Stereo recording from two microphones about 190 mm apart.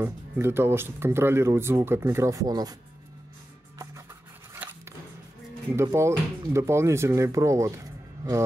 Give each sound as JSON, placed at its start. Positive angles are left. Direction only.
{"t": 0.0, "sound": "speech", "side_deg": -10}
{"t": 3.7, "sound": "music", "side_deg": -15}
{"t": 4.6, "sound": "a sound", "side_deg": -10}
{"t": 5.8, "sound": "speech", "side_deg": -15}